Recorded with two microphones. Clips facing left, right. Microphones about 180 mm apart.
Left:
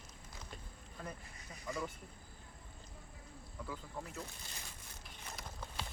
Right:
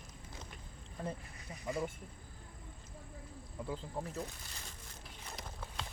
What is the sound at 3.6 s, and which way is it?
Speech, 30° right (ahead or behind).